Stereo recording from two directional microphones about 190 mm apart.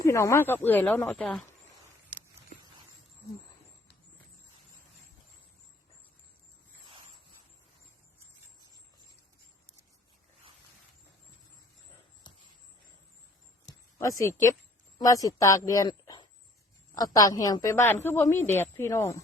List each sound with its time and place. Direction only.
0.0 s speech: 15° left (ahead or behind)
13.7 s a sound: 15° left (ahead or behind)
14.9 s speech: 20° left (ahead or behind)